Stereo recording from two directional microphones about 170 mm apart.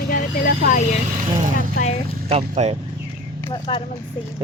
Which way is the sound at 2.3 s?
40° right (ahead or behind).